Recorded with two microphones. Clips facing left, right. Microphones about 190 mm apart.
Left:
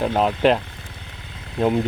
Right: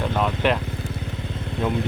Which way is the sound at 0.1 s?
30° left (ahead or behind).